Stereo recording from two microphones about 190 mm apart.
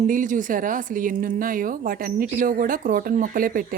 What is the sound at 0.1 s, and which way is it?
Speech, 45° right (ahead or behind).